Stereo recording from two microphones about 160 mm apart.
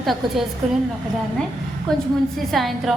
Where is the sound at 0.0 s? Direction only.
Centre (ahead or behind).